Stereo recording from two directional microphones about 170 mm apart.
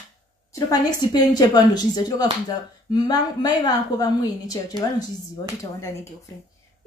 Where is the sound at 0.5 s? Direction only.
20° left (ahead or behind).